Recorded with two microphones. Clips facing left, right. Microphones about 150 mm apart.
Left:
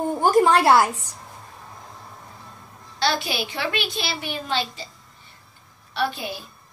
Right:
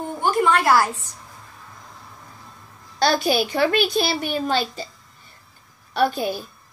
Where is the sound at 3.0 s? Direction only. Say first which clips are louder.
Right 5 dB; 45° right (ahead or behind).